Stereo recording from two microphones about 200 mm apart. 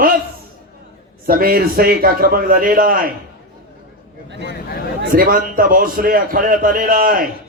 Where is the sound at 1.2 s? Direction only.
45° right (ahead or behind).